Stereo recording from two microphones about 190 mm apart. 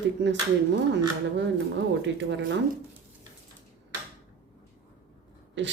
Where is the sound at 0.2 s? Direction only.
65° right (ahead or behind).